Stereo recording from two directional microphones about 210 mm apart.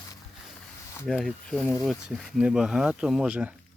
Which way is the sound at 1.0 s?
Centre (ahead or behind).